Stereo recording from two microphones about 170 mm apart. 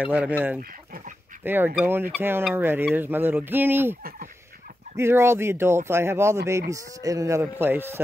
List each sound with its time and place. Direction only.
0.0 s speech: 10° right (ahead or behind)
0.6 s speech: 55° right (ahead or behind)
1.4 s speech: 10° right (ahead or behind)